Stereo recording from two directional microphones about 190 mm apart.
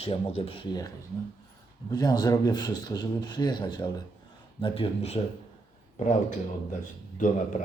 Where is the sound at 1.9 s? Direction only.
20° left (ahead or behind).